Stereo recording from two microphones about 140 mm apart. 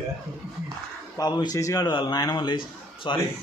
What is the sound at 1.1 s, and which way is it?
A man's voice, 30° left (ahead or behind).